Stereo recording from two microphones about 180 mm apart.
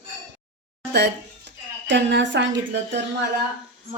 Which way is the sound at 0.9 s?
70° right (ahead or behind).